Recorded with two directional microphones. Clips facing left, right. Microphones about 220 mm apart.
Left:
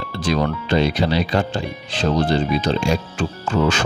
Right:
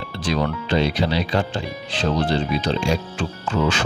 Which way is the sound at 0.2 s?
45° left (ahead or behind).